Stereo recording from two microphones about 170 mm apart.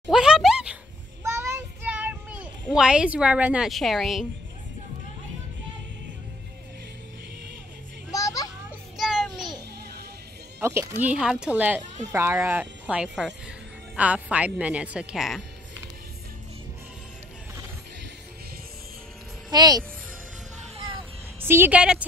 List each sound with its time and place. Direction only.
0.1 s a sound: 5° right (ahead or behind)
1.2 s child singing: 15° right (ahead or behind)
2.7 s a woman's voice: 5° right (ahead or behind)
8.1 s children playing: 20° left (ahead or behind)
8.9 s child singing: centre (ahead or behind)
10.6 s a woman's voice: 15° right (ahead or behind)
19.5 s a child's voice: 25° right (ahead or behind)
21.4 s speech: 15° right (ahead or behind)